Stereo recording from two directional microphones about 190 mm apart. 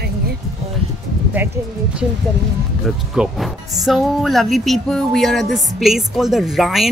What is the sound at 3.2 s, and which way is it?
Speech, centre (ahead or behind).